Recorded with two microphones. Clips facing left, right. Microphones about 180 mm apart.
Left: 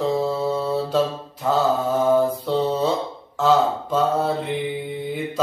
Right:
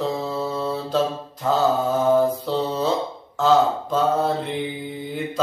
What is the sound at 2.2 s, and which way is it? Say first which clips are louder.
Mantra: even; 5° left (ahead or behind).